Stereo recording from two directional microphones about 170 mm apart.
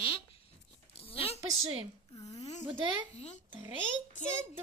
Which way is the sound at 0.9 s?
35° left (ahead or behind).